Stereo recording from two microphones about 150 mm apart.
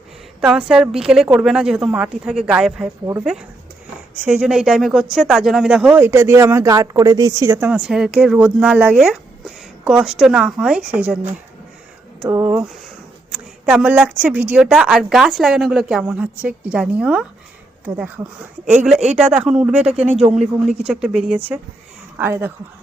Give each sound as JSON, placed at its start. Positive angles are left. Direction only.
{"t": 0.4, "sound": "a woman's voice", "side_deg": -5}
{"t": 4.2, "sound": "a woman's voice", "side_deg": -5}
{"t": 6.0, "sound": "a woman's voice", "side_deg": -15}
{"t": 12.2, "sound": "a woman's voice", "side_deg": -20}
{"t": 13.7, "sound": "a woman's voice", "side_deg": -10}
{"t": 18.6, "sound": "speech", "side_deg": -55}
{"t": 19.1, "sound": "a woman's voice", "side_deg": -5}